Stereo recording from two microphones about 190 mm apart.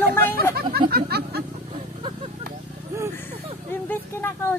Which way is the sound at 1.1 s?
55° right (ahead or behind).